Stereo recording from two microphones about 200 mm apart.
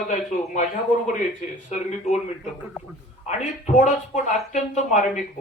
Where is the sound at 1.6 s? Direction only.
35° left (ahead or behind).